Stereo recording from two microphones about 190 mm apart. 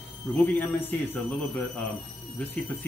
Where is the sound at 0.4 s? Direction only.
10° left (ahead or behind).